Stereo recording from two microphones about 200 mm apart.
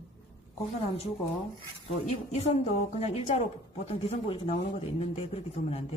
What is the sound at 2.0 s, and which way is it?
A woman's voice, 30° left (ahead or behind).